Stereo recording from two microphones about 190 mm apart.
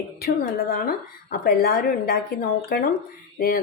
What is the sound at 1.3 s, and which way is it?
Speech, 50° left (ahead or behind).